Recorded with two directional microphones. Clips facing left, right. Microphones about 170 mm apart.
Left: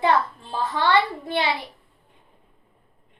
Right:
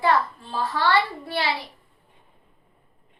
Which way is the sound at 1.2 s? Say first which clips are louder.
Left 2 dB; 20° left (ahead or behind).